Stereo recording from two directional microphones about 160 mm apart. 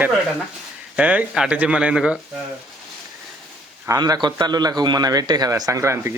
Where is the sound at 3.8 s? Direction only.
25° right (ahead or behind).